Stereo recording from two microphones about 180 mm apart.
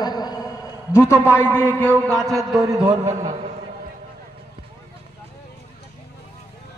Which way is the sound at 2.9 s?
15° right (ahead or behind).